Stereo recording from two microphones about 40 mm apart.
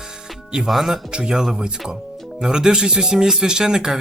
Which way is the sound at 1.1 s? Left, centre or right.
Centre.